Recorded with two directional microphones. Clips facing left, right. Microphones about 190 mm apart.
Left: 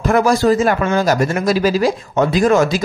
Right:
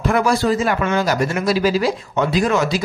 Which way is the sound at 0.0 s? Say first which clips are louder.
Left 4 dB; 45° left (ahead or behind).